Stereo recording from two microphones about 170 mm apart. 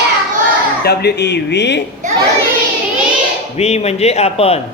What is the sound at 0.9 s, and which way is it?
Speech, 80° left.